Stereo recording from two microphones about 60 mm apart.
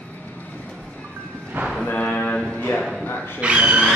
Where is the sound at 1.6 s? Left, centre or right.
Right.